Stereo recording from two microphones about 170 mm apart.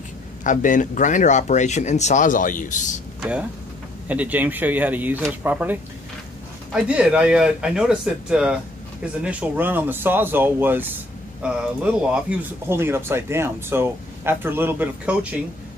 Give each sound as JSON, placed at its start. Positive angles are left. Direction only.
{"t": 0.4, "sound": "speech", "side_deg": 50}
{"t": 3.2, "sound": "speech", "side_deg": -10}